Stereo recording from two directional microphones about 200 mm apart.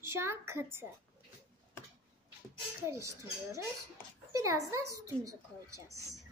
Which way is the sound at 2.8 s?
15° right (ahead or behind).